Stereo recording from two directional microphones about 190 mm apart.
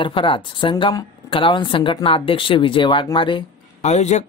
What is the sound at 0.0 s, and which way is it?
A woman's voice, 25° left (ahead or behind).